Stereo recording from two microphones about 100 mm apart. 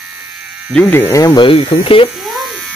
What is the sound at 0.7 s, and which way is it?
Speech, 20° left (ahead or behind).